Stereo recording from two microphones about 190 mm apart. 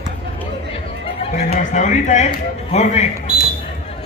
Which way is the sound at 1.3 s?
40° left (ahead or behind).